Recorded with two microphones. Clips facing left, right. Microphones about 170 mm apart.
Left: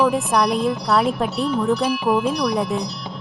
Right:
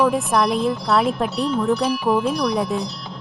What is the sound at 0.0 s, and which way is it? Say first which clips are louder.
Speech: even; centre (ahead or behind).